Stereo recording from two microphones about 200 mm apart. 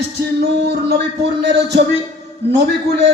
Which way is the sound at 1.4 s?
60° right (ahead or behind).